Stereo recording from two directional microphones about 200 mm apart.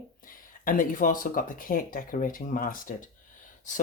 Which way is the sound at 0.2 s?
45° left (ahead or behind).